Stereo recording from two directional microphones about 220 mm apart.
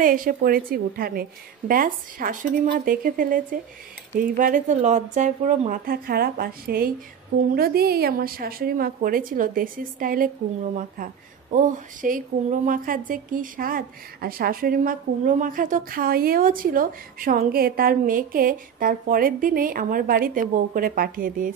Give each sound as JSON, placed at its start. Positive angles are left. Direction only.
{"t": 0.0, "sound": "a woman's voice", "side_deg": -40}
{"t": 11.5, "sound": "a woman's voice", "side_deg": -35}